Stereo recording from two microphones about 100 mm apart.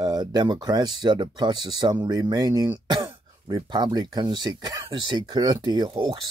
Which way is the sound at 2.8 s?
50° right (ahead or behind).